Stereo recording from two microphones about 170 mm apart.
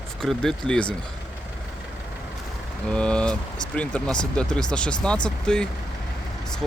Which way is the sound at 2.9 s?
5° left (ahead or behind).